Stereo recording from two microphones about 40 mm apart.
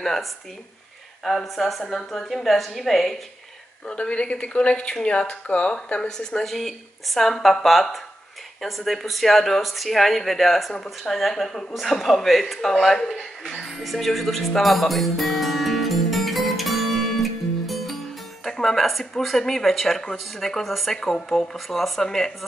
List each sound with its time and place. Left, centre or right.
0.0 s speech: centre
3.8 s speech: left
5.9 s speech: centre
6.5 s speech: centre
13.6 s music: centre
18.5 s speech: centre